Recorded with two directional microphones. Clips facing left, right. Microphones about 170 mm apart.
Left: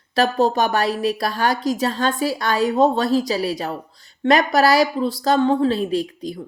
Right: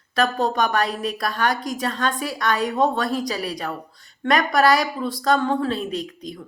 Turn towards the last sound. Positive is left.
turn(degrees=30)  # may be behind; listen again after turning